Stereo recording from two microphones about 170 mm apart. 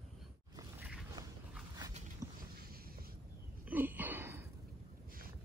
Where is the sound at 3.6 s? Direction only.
10° right (ahead or behind).